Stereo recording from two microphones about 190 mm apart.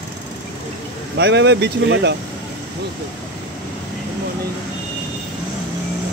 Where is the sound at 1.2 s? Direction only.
65° right (ahead or behind).